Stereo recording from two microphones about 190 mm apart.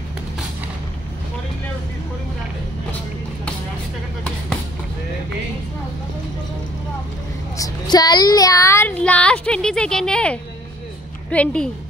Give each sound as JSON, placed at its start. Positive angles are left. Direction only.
{"t": 7.5, "sound": "child singing", "side_deg": 20}
{"t": 11.2, "sound": "a woman's voice", "side_deg": 5}